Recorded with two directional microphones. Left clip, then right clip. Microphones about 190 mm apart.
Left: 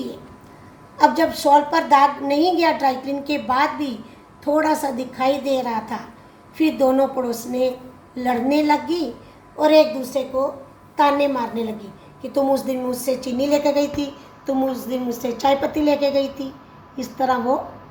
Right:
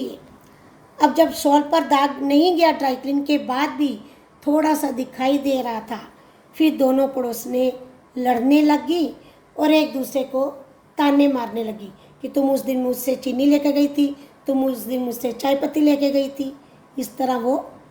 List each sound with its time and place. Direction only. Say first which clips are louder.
0.9 s a woman's voice: even; 60° right (ahead or behind)